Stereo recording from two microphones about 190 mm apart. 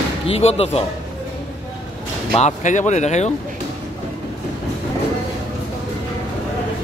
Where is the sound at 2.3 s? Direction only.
40° left (ahead or behind).